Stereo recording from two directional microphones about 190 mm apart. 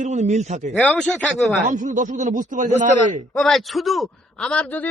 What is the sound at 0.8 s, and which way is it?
Speech, 5° left (ahead or behind).